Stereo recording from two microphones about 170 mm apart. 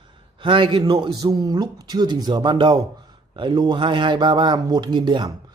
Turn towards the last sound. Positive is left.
turn(degrees=-25)  # may be behind; listen again after turning